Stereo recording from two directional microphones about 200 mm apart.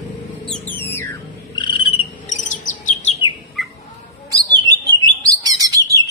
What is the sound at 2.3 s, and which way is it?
Chirp, 40° left (ahead or behind).